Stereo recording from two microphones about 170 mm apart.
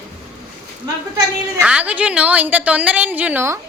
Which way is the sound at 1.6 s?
5° right (ahead or behind).